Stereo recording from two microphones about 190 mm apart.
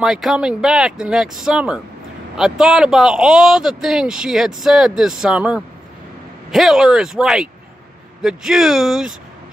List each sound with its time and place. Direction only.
0.0 s speech: centre (ahead or behind)